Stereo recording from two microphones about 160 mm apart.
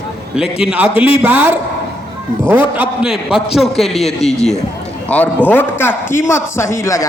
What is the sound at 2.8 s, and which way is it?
A man's voice, 5° right (ahead or behind).